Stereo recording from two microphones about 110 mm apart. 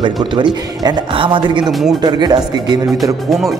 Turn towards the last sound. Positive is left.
turn(degrees=0)  # may be behind; listen again after turning